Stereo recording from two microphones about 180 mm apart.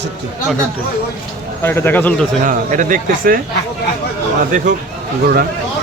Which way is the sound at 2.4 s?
45° right (ahead or behind).